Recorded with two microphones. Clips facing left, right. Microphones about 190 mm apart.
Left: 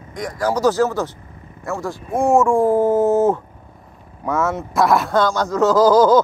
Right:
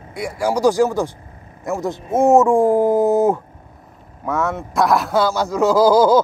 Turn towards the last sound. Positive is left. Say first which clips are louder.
# even
turn(degrees=-10)  # may be behind; listen again after turning